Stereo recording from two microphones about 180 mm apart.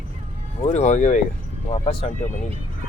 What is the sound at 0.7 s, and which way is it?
Speech, 40° left (ahead or behind).